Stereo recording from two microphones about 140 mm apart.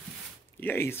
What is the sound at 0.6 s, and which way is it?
Speech, 15° left (ahead or behind).